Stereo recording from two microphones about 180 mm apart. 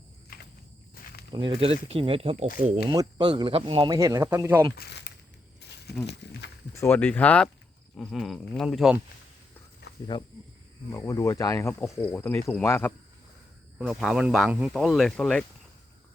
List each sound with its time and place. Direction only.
1.3 s speech: 25° right (ahead or behind)
4.8 s speech: 75° left (ahead or behind)
5.6 s crumpling: 70° left (ahead or behind)
6.7 s speech: 10° left (ahead or behind)
10.9 s speech: 15° left (ahead or behind)
13.7 s speech: 5° right (ahead or behind)